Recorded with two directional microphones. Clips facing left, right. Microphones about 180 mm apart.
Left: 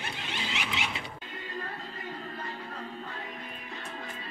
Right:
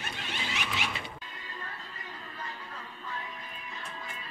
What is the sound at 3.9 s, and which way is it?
Music, 35° left (ahead or behind).